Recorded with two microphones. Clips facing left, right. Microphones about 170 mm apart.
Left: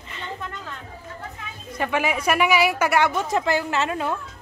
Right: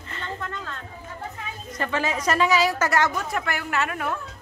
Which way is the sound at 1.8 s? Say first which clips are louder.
Left 3 dB; 15° left (ahead or behind).